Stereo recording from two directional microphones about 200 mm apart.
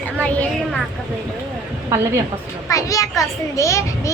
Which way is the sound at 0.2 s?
5° left (ahead or behind).